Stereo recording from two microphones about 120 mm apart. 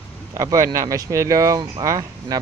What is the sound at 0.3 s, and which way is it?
Speech, 25° right (ahead or behind).